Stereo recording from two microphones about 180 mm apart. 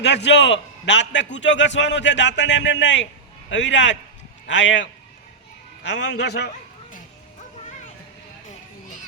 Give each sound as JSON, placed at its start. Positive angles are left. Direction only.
{"t": 0.0, "sound": "a man's voice", "side_deg": 75}
{"t": 5.9, "sound": "a man's voice", "side_deg": 75}